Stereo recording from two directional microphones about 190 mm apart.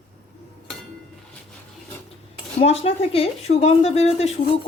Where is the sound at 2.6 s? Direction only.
30° left (ahead or behind).